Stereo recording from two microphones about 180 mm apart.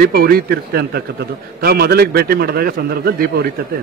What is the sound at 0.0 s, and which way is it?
A man's voice, 55° right (ahead or behind).